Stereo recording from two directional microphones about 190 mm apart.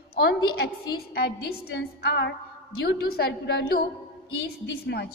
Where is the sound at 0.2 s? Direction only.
55° left (ahead or behind).